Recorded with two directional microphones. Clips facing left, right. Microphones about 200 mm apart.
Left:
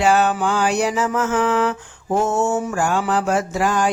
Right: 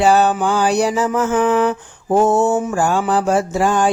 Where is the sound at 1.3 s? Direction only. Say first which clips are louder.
Right 4 dB; 20° right (ahead or behind).